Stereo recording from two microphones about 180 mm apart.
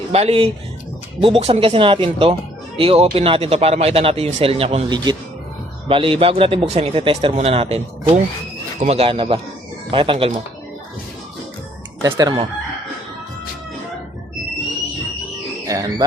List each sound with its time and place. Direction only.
0.1 s speech: 35° right (ahead or behind)
12.0 s speech: 20° right (ahead or behind)
15.6 s speech: 20° right (ahead or behind)